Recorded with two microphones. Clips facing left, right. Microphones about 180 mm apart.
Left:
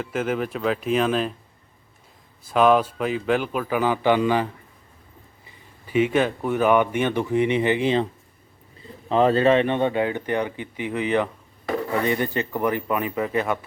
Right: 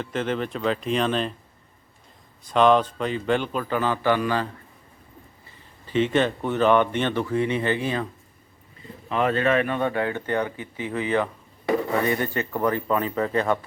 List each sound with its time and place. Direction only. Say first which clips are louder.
0.0 s speech: left 1 dB; 5° left (ahead or behind)
2.4 s speech: even; 5° left (ahead or behind)
5.5 s speech: left 2 dB; 10° left (ahead or behind)
9.0 s speech: left 5 dB; 30° left (ahead or behind); by 13.6 s 10° left (ahead or behind)